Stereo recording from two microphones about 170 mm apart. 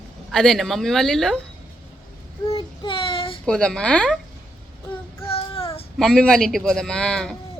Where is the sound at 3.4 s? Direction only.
5° left (ahead or behind).